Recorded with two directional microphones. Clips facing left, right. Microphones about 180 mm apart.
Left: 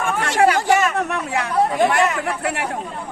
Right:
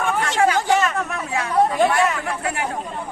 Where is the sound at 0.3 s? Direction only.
65° left (ahead or behind).